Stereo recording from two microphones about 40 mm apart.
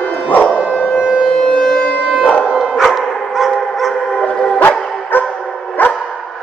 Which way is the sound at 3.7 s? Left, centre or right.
Centre.